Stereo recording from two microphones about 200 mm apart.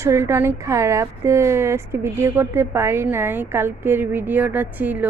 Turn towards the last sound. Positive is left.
turn(degrees=-5)  # may be behind; listen again after turning